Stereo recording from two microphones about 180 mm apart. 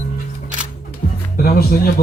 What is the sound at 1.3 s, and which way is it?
Speech, 55° left (ahead or behind).